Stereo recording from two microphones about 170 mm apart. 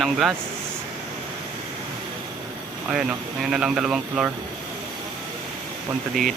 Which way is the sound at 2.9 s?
5° right (ahead or behind).